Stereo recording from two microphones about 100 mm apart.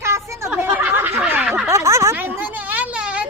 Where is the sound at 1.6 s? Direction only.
30° right (ahead or behind).